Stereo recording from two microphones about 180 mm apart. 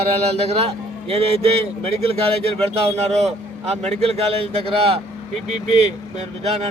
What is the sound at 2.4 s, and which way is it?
Speech, 35° right (ahead or behind).